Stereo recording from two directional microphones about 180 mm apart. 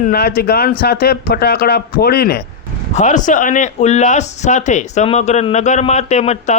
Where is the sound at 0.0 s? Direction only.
60° left (ahead or behind).